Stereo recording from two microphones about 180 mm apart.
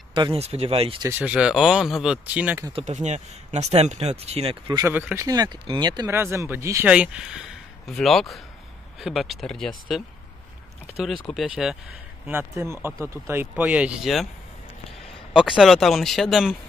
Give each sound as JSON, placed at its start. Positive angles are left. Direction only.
{"t": 0.1, "sound": "speech", "side_deg": -30}
{"t": 1.0, "sound": "speech", "side_deg": -10}
{"t": 2.7, "sound": "speech", "side_deg": -40}
{"t": 4.7, "sound": "speech", "side_deg": -10}
{"t": 11.2, "sound": "speech", "side_deg": 0}
{"t": 12.3, "sound": "speech", "side_deg": -15}
{"t": 15.3, "sound": "speech", "side_deg": -5}